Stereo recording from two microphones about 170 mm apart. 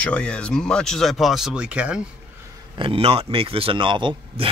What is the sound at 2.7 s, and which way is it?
Speech, 35° right (ahead or behind).